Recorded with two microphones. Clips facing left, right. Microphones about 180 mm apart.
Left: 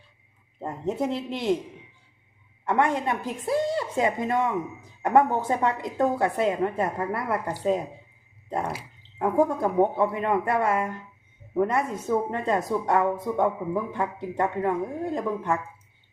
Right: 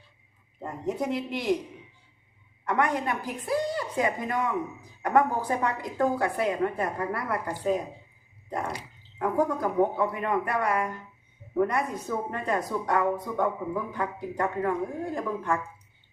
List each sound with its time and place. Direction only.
0.6 s a woman's voice: 25° left (ahead or behind)
2.6 s a woman's voice: 25° left (ahead or behind)
9.1 s a woman's voice: 25° left (ahead or behind)